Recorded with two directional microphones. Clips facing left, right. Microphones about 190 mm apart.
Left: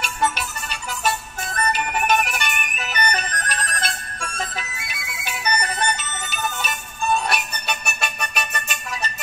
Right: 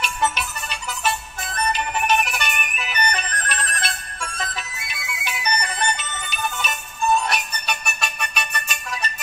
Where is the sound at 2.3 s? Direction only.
45° left (ahead or behind).